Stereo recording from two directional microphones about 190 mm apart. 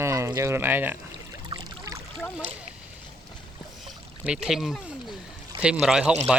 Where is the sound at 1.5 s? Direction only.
20° right (ahead or behind).